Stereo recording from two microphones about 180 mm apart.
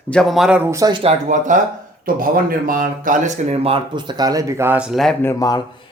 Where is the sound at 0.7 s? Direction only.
20° right (ahead or behind).